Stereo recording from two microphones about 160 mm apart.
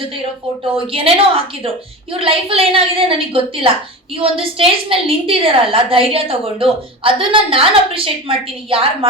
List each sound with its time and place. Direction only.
0.9 s a woman's voice: 35° right (ahead or behind)